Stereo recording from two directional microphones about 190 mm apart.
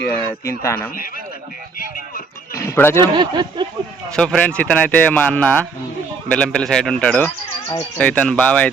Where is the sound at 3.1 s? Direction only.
25° right (ahead or behind).